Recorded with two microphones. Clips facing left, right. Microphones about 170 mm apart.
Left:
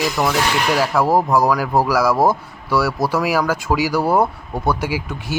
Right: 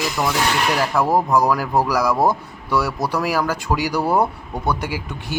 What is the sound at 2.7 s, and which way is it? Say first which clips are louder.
Speech: left 3 dB; 20° right (ahead or behind).